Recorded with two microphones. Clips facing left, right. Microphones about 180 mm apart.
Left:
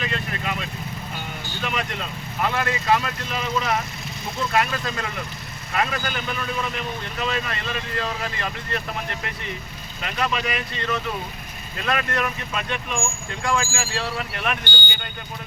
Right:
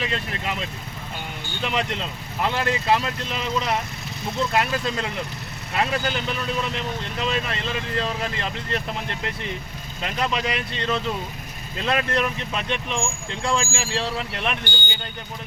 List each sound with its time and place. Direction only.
0.0 s vehicle: 30° right (ahead or behind)
1.6 s speech: 25° right (ahead or behind)
10.0 s speech: 25° right (ahead or behind)